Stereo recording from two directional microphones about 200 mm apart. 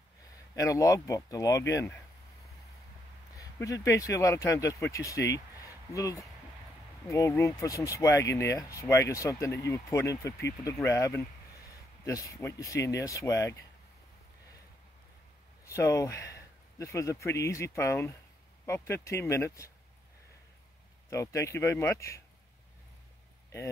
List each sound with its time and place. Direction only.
0.6 s speech: 15° left (ahead or behind)
3.3 s speech: 15° left (ahead or behind)
5.3 s a sound: 15° left (ahead or behind)
7.1 s speech: 15° left (ahead or behind)
15.6 s speech: 15° left (ahead or behind)
21.1 s speech: 15° left (ahead or behind)